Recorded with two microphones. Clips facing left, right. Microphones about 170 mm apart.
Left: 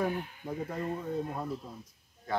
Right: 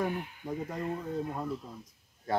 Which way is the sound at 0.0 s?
5° left (ahead or behind).